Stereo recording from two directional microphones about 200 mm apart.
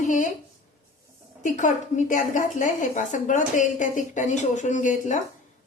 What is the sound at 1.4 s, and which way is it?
A woman's voice, 40° left (ahead or behind).